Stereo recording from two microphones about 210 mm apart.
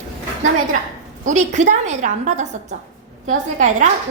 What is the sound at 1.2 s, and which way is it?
A woman's voice, 35° right (ahead or behind).